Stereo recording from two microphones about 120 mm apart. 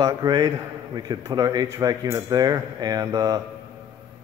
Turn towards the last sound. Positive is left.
turn(degrees=-30)  # may be behind; listen again after turning